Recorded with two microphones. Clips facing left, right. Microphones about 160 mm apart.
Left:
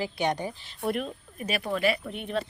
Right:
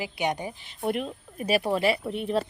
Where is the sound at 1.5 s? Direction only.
35° right (ahead or behind).